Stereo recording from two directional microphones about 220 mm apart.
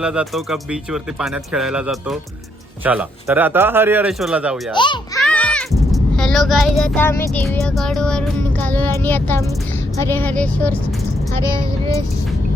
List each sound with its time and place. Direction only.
0.0 s speech: 5° right (ahead or behind)
4.7 s a sound: 20° left (ahead or behind)
5.2 s speech: 5° left (ahead or behind)